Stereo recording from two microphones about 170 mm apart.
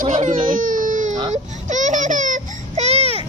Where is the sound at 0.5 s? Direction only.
55° right (ahead or behind).